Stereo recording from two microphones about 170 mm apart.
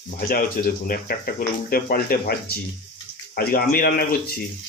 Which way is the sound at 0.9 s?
60° left (ahead or behind).